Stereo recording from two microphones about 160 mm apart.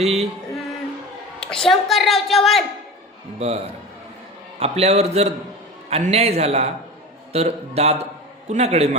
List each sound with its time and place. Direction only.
0.0 s a man's voice: 40° right (ahead or behind)
1.4 s a woman's voice: 5° left (ahead or behind)
3.3 s a man's voice: 40° right (ahead or behind)
4.6 s a man's voice: 40° right (ahead or behind)